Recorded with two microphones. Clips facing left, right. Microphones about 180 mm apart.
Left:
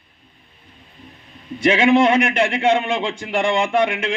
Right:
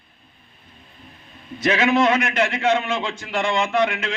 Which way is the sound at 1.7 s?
30° left (ahead or behind).